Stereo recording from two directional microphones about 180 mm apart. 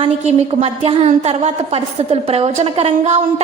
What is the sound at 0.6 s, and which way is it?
A woman's voice, 35° right (ahead or behind).